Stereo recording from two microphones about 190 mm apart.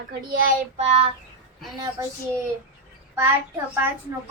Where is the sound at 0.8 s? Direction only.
30° right (ahead or behind).